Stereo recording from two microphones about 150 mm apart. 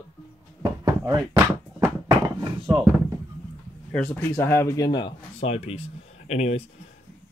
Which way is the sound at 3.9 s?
10° left (ahead or behind).